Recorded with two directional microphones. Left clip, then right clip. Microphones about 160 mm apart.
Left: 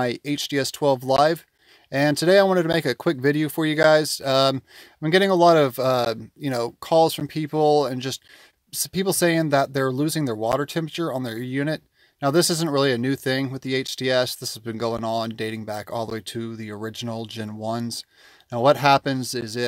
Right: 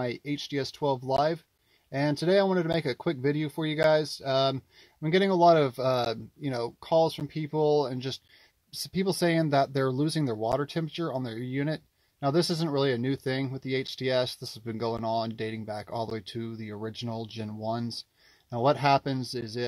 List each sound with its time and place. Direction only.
0.0 s speech: 30° left (ahead or behind)